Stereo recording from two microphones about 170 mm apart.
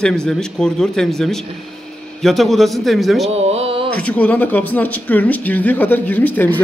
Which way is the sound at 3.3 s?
35° right (ahead or behind).